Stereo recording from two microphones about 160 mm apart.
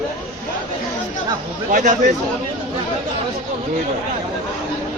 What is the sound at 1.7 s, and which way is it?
Speech, 50° right (ahead or behind).